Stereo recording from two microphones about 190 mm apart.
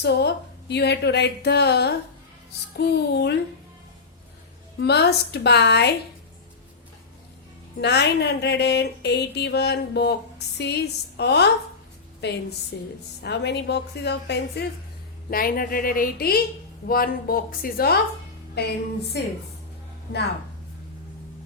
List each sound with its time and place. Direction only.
0.0 s speech: 60° left (ahead or behind)
4.8 s speech: 60° left (ahead or behind)
7.8 s speech: 60° left (ahead or behind)
15.3 s speech: 50° left (ahead or behind)
19.1 s speech: 65° left (ahead or behind)